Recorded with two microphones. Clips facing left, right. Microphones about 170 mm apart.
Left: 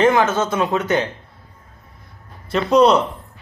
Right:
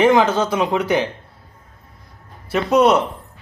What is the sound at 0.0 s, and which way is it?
Speech, 15° right (ahead or behind).